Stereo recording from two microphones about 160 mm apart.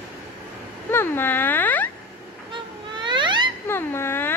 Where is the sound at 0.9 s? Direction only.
15° left (ahead or behind).